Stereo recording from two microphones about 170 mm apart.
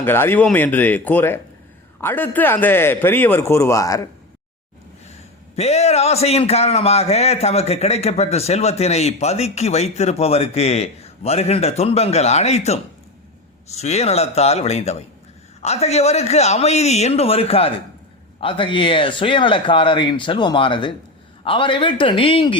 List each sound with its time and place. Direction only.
0.0 s a man's voice: 15° left (ahead or behind)
5.5 s a man's voice: 40° left (ahead or behind)